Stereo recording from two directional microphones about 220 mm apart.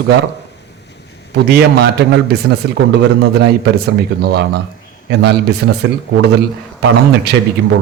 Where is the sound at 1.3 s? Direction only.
45° right (ahead or behind).